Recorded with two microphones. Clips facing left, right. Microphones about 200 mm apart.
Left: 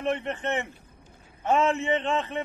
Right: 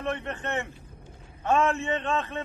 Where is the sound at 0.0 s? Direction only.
15° left (ahead or behind).